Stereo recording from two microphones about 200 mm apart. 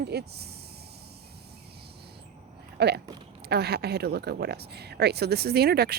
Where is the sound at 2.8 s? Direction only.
55° right (ahead or behind).